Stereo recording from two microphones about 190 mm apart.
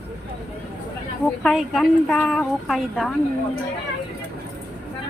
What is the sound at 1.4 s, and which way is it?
Speech, centre (ahead or behind).